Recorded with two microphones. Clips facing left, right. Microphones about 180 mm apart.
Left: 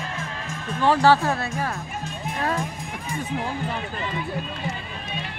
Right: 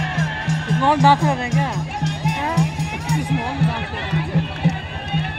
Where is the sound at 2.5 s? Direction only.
80° right.